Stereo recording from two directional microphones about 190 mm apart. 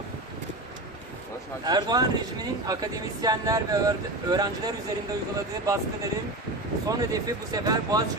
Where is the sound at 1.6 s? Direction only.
20° right (ahead or behind).